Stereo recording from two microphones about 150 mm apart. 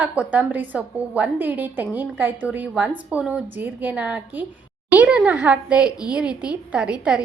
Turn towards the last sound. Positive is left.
turn(degrees=-5)  # may be behind; listen again after turning